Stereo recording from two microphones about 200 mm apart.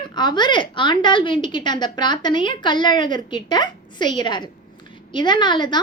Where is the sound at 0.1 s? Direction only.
20° left (ahead or behind).